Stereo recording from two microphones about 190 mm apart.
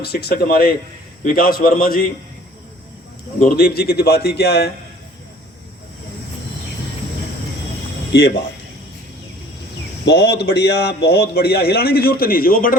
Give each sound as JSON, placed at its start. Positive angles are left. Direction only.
{"t": 0.0, "sound": "a man's voice", "side_deg": 55}
{"t": 3.4, "sound": "a man's voice", "side_deg": 55}
{"t": 10.1, "sound": "a man's voice", "side_deg": 60}